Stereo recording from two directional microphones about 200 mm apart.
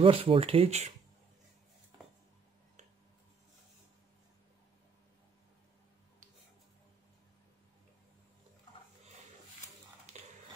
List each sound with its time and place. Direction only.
0.0 s speech: 25° right (ahead or behind)